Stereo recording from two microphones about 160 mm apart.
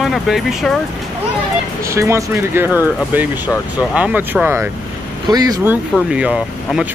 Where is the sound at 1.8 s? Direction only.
20° right (ahead or behind).